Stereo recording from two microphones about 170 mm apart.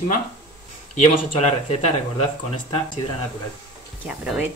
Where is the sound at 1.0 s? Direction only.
40° left (ahead or behind).